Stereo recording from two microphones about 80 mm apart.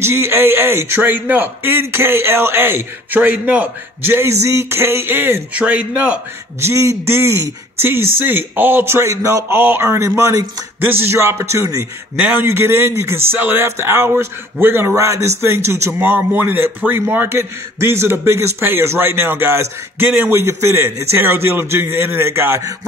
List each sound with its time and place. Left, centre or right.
0.0 s speech: right
4.1 s speech: right
5.6 s a man's voice: centre
6.6 s speech: right
10.8 s speech: right
12.2 s speech: centre
12.4 s speech: right